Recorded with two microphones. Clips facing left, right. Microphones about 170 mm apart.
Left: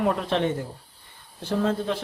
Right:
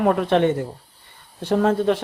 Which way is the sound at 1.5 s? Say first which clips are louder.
Right 6 dB; 70° right (ahead or behind).